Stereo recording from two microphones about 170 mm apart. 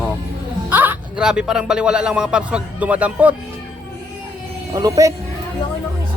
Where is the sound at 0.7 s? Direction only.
10° right (ahead or behind).